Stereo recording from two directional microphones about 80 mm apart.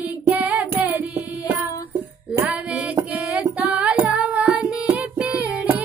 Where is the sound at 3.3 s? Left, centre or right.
Centre.